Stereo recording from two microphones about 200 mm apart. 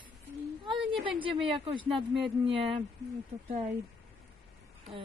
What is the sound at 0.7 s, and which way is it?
Speech, 25° right (ahead or behind).